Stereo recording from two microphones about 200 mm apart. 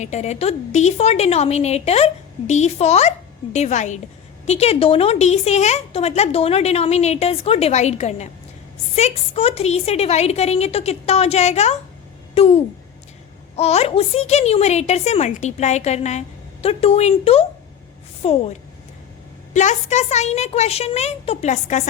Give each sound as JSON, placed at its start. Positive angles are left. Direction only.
{"t": 0.0, "sound": "a woman's voice", "side_deg": 35}
{"t": 19.5, "sound": "a woman's voice", "side_deg": 35}